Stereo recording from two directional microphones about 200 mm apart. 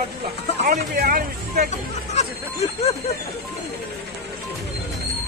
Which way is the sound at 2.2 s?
30° left (ahead or behind).